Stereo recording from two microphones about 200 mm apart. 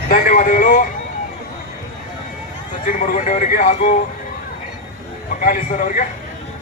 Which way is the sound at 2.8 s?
40° left (ahead or behind).